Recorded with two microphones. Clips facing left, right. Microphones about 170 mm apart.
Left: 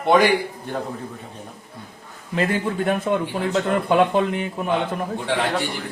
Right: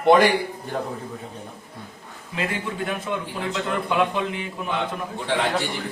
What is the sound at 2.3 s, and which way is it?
A man's voice, 40° left (ahead or behind).